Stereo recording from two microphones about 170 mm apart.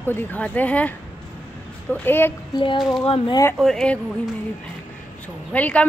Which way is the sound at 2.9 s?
30° left (ahead or behind).